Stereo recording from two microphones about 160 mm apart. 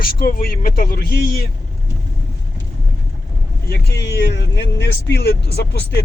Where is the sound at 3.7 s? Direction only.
90° left.